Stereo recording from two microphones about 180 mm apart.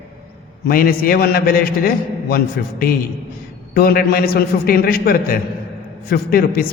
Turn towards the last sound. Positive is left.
turn(degrees=55)  # may be behind; listen again after turning